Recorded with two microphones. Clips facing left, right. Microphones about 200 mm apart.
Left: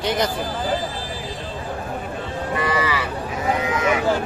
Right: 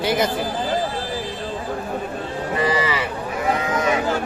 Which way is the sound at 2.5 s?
25° right (ahead or behind).